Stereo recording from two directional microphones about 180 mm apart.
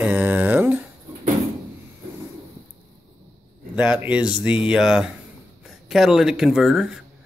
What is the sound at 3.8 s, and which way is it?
Speech, 5° right (ahead or behind).